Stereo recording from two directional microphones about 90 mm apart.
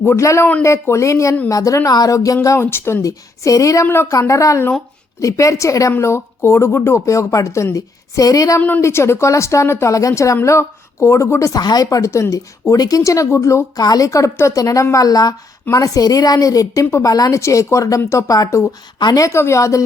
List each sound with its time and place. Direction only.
0.0 s a woman's voice: 30° left (ahead or behind)
2.6 s a woman's voice: 25° left (ahead or behind)
3.8 s speech: 25° left (ahead or behind)
4.1 s a woman's voice: 35° left (ahead or behind)
8.8 s a woman's voice: 30° left (ahead or behind)
11.6 s a woman's voice: 45° left (ahead or behind)
18.9 s a woman's voice: 50° left (ahead or behind)
19.2 s a woman's voice: 30° left (ahead or behind)